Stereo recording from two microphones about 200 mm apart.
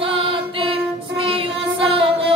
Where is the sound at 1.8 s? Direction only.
25° right (ahead or behind).